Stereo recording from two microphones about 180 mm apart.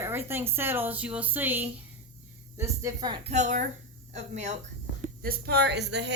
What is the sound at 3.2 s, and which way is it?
A woman's voice, 40° right (ahead or behind).